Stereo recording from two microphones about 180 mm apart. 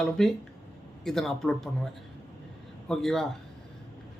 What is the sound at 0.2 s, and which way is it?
Speech, 5° left (ahead or behind).